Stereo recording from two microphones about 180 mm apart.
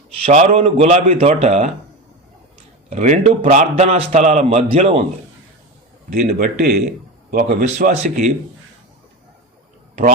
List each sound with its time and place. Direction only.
0.3 s a man's voice: 35° right (ahead or behind)
2.9 s a man's voice: 40° right (ahead or behind)
6.4 s speech: 60° right (ahead or behind)
6.8 s a sound: 45° right (ahead or behind)
7.5 s speech: 45° right (ahead or behind)